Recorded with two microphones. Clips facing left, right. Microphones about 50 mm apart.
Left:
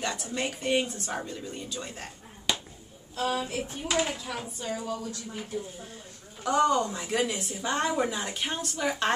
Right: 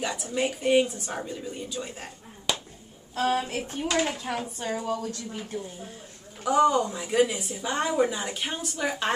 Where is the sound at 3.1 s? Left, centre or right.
Right.